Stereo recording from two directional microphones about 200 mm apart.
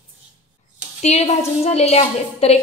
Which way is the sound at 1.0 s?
35° left (ahead or behind).